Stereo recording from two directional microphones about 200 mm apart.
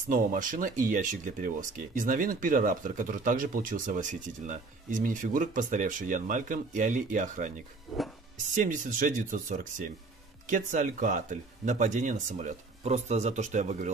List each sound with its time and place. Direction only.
0.1 s speech: 40° right (ahead or behind)
7.9 s music: centre (ahead or behind)
8.6 s speech: 40° right (ahead or behind)